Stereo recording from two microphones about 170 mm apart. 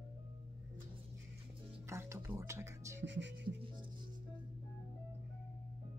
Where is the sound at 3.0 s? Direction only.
90° right.